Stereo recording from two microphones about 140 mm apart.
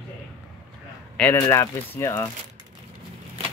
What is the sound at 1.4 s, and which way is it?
Speech, 15° left (ahead or behind).